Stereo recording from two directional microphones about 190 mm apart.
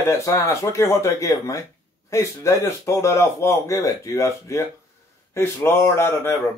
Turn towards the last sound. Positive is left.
turn(degrees=10)  # may be behind; listen again after turning